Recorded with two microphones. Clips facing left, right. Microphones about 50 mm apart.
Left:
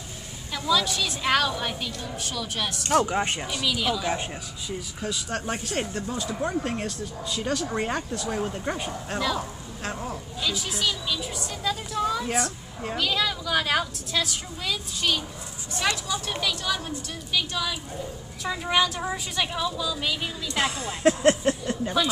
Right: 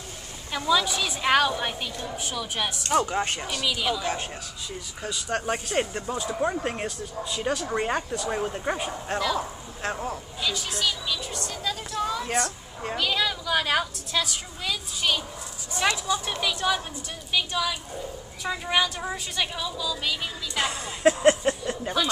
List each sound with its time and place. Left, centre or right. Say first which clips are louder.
0.5 s a woman's voice: right 1 dB; centre
3.2 s a man's voice: left 1 dB; centre
3.6 s speech: left 1 dB; centre
4.1 s a man's voice: left 2 dB; centre
5.0 s speech: right 2 dB; centre
9.4 s a sound: right 2 dB; centre
10.0 s speech: even; centre
15.8 s speech: right 2 dB; centre